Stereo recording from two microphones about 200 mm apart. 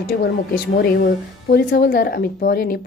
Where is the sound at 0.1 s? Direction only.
50° left (ahead or behind).